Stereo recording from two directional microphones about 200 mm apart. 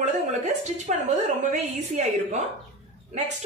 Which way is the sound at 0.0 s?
35° right (ahead or behind).